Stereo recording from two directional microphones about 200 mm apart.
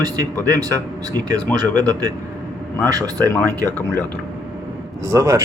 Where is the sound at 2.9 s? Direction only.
15° right (ahead or behind).